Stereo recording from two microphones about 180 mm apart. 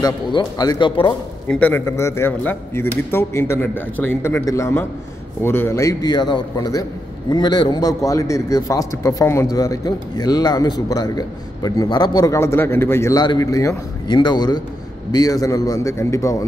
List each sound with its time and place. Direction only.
0.0 s a man's voice: 20° left (ahead or behind)
1.5 s a man's voice: 10° left (ahead or behind)